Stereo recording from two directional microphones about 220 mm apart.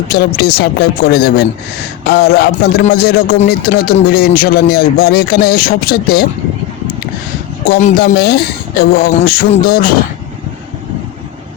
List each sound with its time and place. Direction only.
0.1 s speech: 45° left (ahead or behind)
7.7 s speech: 40° left (ahead or behind)